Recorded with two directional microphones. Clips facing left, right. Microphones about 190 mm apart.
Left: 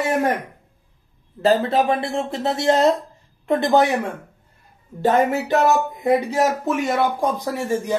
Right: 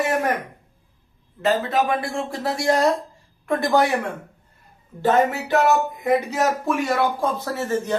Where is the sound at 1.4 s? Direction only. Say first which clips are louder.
Left 3 dB; 35° left (ahead or behind).